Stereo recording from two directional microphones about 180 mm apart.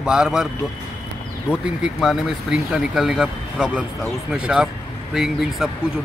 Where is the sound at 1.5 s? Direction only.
5° right (ahead or behind).